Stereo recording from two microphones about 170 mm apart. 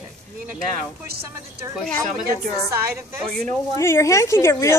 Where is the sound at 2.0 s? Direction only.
50° right (ahead or behind).